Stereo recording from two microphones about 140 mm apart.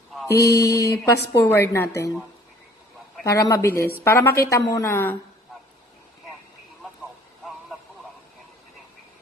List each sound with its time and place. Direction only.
0.3 s speech: 25° left (ahead or behind)
3.3 s speech: 20° left (ahead or behind)